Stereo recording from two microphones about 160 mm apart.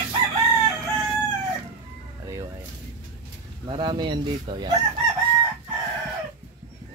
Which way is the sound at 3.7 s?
30° right (ahead or behind).